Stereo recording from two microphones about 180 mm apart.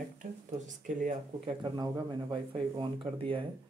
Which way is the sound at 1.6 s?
25° right (ahead or behind).